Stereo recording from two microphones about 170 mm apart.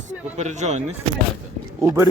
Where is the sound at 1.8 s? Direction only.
15° right (ahead or behind).